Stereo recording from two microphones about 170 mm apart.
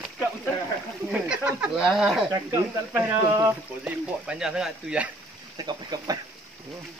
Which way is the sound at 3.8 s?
5° right (ahead or behind).